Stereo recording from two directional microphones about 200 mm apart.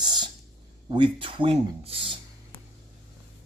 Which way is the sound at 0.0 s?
20° right (ahead or behind).